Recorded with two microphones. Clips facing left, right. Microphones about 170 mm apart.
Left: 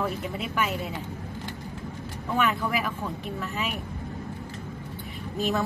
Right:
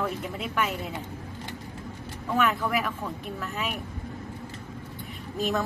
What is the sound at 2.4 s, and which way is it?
Speech, centre (ahead or behind).